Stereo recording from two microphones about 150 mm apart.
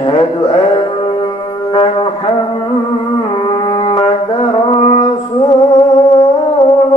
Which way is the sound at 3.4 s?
35° left (ahead or behind).